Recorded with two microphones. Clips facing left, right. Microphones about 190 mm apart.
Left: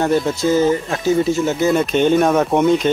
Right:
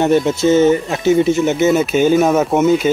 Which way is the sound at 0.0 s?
20° right (ahead or behind).